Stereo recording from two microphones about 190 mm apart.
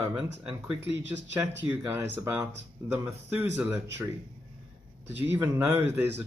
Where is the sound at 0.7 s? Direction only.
65° right (ahead or behind).